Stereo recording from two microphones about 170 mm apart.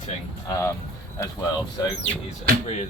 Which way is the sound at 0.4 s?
20° left (ahead or behind).